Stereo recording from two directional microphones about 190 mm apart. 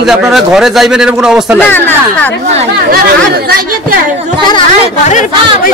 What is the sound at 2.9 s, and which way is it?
Speech, 50° right (ahead or behind).